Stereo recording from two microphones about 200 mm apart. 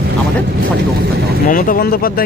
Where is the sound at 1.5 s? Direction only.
45° left (ahead or behind).